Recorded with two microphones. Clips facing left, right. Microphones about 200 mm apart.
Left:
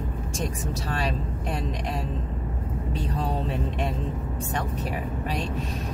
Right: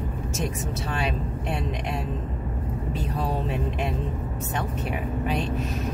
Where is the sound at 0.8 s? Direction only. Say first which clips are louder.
Even; 35° left (ahead or behind).